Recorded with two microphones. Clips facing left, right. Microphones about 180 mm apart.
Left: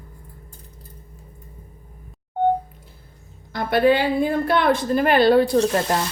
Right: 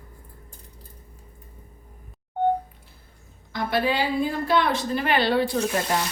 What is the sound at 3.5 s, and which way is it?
A woman's voice, 55° left (ahead or behind).